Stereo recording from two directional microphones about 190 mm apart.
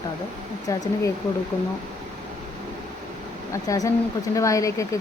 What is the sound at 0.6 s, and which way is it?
Speech, 20° left (ahead or behind).